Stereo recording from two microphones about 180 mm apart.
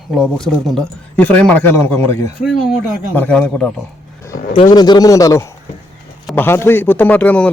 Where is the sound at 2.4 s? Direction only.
Centre (ahead or behind).